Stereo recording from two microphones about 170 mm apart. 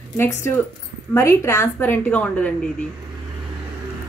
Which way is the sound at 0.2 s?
15° left (ahead or behind).